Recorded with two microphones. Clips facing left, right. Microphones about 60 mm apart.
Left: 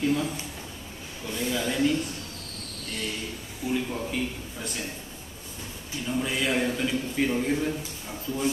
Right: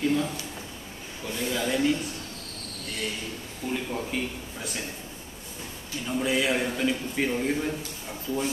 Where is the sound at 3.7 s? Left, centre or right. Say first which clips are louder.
Left 2 dB; centre.